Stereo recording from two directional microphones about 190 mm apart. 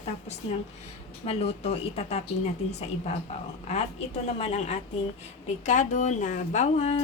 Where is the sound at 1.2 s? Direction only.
30° left (ahead or behind).